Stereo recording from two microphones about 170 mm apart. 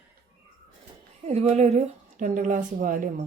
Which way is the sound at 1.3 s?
40° right (ahead or behind).